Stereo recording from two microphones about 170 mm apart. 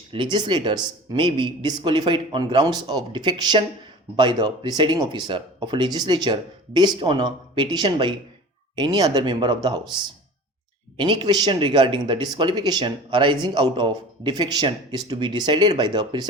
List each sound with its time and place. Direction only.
0.1 s a man's voice: 30° right (ahead or behind)
10.9 s a man's voice: 25° right (ahead or behind)